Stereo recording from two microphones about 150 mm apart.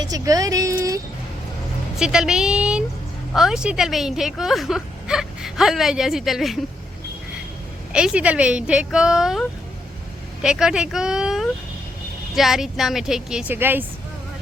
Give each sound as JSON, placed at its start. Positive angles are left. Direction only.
{"t": 0.0, "sound": "speech", "side_deg": -25}
{"t": 2.0, "sound": "speech", "side_deg": -5}
{"t": 7.9, "sound": "speech", "side_deg": -5}